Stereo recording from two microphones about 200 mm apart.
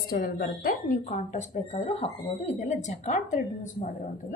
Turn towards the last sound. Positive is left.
turn(degrees=40)  # may be behind; listen again after turning